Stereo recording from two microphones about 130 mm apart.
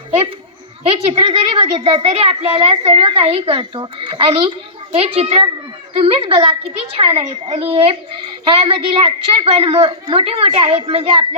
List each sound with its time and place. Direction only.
1.1 s a woman's voice: 40° right (ahead or behind)